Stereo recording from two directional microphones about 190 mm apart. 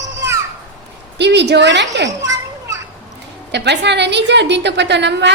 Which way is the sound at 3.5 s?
65° right (ahead or behind).